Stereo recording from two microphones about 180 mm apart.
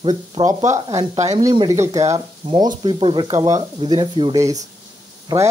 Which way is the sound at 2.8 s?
30° right (ahead or behind).